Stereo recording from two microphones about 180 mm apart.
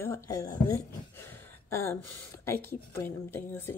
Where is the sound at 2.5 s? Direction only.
15° left (ahead or behind).